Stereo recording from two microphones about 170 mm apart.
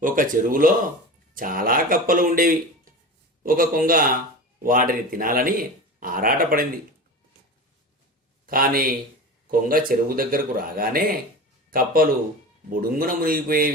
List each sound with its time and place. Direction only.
0.0 s a man's voice: 50° right (ahead or behind)
8.4 s a man's voice: 55° right (ahead or behind)